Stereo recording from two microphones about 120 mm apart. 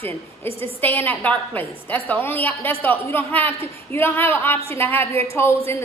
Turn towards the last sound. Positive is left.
turn(degrees=20)  # may be behind; listen again after turning